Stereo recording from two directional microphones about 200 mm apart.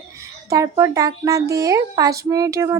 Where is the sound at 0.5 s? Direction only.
15° right (ahead or behind).